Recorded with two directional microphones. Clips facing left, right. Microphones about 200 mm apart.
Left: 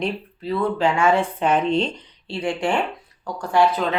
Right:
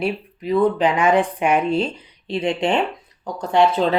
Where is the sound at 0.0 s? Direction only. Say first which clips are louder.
Right 2 dB; 15° right (ahead or behind).